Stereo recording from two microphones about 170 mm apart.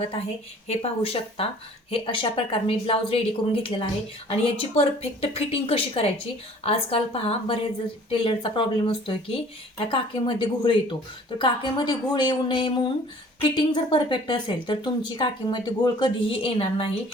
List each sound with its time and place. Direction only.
0.7 s a woman's voice: 35° left (ahead or behind)